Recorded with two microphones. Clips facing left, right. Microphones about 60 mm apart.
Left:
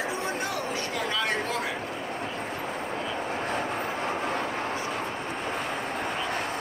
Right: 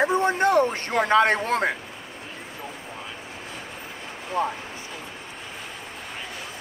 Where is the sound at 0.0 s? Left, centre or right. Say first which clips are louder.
Right 9 dB; right.